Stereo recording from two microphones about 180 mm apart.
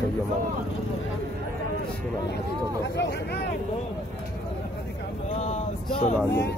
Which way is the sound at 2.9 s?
70° left (ahead or behind).